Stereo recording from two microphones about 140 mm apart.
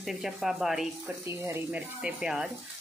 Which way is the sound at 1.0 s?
20° right (ahead or behind).